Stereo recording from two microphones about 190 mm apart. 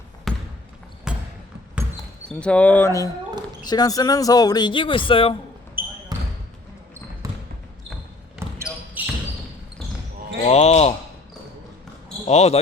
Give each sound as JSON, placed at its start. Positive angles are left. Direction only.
{"t": 0.3, "sound": "trickle", "side_deg": 0}
{"t": 1.1, "sound": "basketball bounce", "side_deg": -5}
{"t": 2.4, "sound": "speech", "side_deg": 5}
{"t": 5.8, "sound": "basketball bounce", "side_deg": -10}
{"t": 8.7, "sound": "basketball bounce", "side_deg": 15}
{"t": 10.4, "sound": "speech", "side_deg": 35}
{"t": 12.3, "sound": "speech", "side_deg": 35}